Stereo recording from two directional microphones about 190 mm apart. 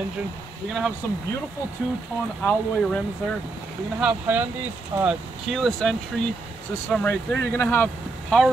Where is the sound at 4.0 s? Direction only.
10° right (ahead or behind).